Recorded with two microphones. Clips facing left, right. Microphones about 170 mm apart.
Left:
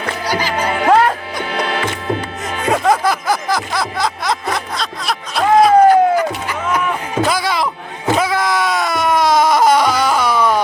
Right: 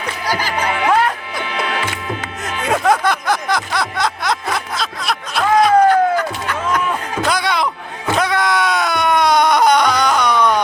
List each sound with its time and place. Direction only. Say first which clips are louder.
0.6 s music: left 3 dB; 40° left (ahead or behind)
2.6 s music: left 1 dB; centre (ahead or behind)
5.6 s a sound: left 3 dB; 10° left (ahead or behind)